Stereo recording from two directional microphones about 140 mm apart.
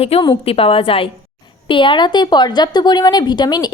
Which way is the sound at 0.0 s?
40° left (ahead or behind).